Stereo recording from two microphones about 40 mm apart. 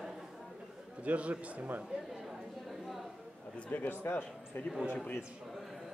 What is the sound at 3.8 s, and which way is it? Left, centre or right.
Speech, left.